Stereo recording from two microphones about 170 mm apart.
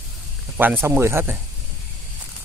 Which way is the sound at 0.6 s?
10° right (ahead or behind).